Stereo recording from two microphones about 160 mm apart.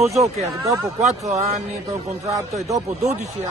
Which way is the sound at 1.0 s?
45° right (ahead or behind).